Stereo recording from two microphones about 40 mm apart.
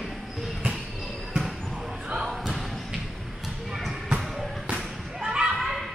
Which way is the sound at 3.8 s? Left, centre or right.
Centre.